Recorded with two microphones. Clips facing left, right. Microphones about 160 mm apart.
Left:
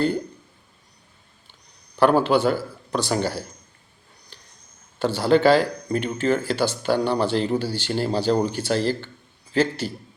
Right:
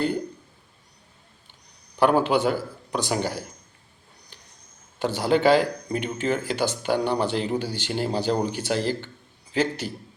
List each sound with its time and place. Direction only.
2.0 s speech: 15° right (ahead or behind)
4.3 s a sound: 15° right (ahead or behind)
4.9 s speech: 15° right (ahead or behind)